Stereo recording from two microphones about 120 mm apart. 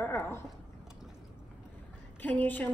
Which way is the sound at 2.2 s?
15° left (ahead or behind).